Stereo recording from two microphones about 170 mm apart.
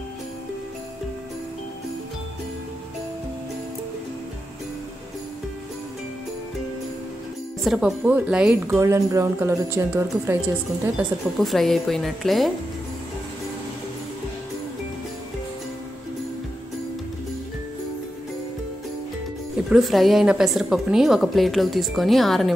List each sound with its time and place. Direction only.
7.6 s a woman's voice: 5° right (ahead or behind)
8.6 s speech: 15° right (ahead or behind)
11.3 s a woman's voice: centre (ahead or behind)
19.7 s a woman's voice: centre (ahead or behind)